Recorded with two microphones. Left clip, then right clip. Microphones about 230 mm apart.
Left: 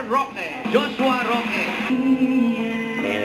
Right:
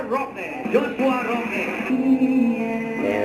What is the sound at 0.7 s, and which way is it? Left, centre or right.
Speech, centre.